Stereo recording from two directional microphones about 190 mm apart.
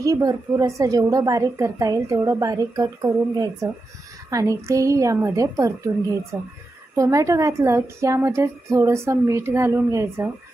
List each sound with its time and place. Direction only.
0.0 s a woman's voice: 20° right (ahead or behind)